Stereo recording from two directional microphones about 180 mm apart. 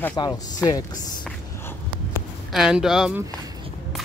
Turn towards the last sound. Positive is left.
turn(degrees=-5)  # may be behind; listen again after turning